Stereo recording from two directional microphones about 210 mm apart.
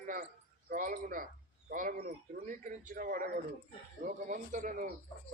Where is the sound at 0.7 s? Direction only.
40° right (ahead or behind).